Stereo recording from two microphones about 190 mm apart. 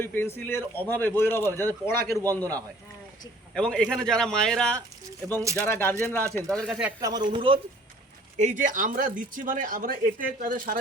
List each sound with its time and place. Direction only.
0.0 s a man's voice: 10° left (ahead or behind)
5.4 s speech: 15° right (ahead or behind)
5.6 s a man's voice: 10° left (ahead or behind); by 6.9 s 5° right (ahead or behind)
7.3 s speech: 25° right (ahead or behind)
8.4 s speech: 40° right (ahead or behind)